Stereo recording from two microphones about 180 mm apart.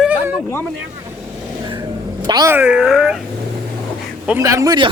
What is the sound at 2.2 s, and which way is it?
Speech, 20° right (ahead or behind).